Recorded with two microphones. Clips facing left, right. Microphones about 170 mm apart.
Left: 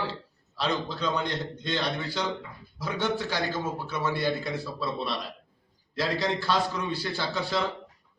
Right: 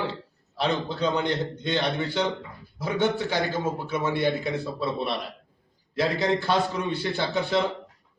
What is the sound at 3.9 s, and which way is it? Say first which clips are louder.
A man's voice: right 3 dB; 20° right (ahead or behind).